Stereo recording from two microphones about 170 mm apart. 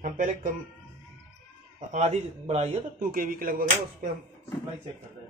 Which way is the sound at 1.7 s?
45° right (ahead or behind).